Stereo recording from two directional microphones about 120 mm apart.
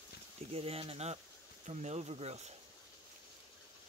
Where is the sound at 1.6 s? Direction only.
70° right (ahead or behind).